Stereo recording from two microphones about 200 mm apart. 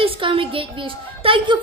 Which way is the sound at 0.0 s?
25° right (ahead or behind).